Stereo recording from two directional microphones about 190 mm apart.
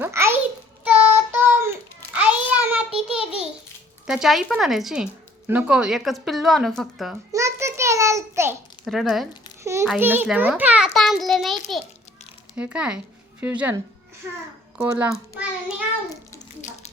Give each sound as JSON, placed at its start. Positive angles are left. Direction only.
{"t": 0.0, "sound": "a sound", "side_deg": -15}
{"t": 0.9, "sound": "child singing", "side_deg": -10}
{"t": 3.2, "sound": "babbling", "side_deg": -5}
{"t": 4.0, "sound": "a child's voice", "side_deg": -5}
{"t": 7.3, "sound": "a sound", "side_deg": -15}
{"t": 8.8, "sound": "speech", "side_deg": 0}
{"t": 10.0, "sound": "a child's voice", "side_deg": -10}
{"t": 14.8, "sound": "a child's voice", "side_deg": -10}
{"t": 16.6, "sound": "a sound", "side_deg": 40}